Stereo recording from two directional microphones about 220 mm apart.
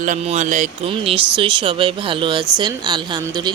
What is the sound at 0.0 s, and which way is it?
Speech, 30° right (ahead or behind).